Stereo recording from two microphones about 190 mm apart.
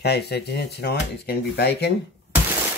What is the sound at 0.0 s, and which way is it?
Speech, 60° left (ahead or behind).